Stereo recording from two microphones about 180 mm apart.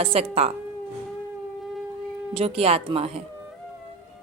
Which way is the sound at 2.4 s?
35° right (ahead or behind).